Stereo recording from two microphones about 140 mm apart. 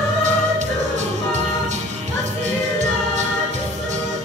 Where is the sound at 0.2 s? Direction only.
60° right (ahead or behind).